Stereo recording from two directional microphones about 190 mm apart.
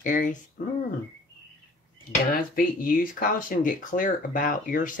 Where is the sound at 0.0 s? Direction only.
45° left (ahead or behind).